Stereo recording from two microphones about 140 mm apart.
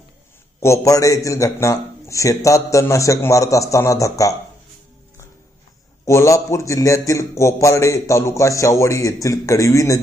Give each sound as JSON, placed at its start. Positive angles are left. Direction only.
{"t": 0.6, "sound": "a man's voice", "side_deg": 20}
{"t": 6.1, "sound": "a man's voice", "side_deg": 20}